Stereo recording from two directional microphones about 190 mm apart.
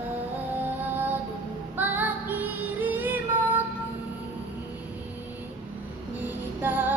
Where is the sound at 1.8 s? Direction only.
10° right (ahead or behind).